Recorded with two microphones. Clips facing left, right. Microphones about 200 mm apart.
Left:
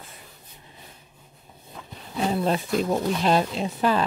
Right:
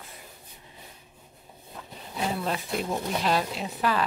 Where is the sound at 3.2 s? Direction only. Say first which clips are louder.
Left 5 dB; 25° left (ahead or behind).